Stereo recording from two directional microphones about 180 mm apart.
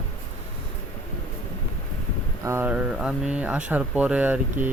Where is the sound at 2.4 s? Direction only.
15° right (ahead or behind).